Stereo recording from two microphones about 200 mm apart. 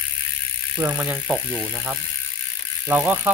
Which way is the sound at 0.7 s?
10° right (ahead or behind).